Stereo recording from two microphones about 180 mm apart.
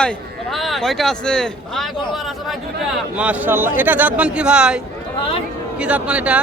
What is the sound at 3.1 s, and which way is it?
Speech, 10° right (ahead or behind).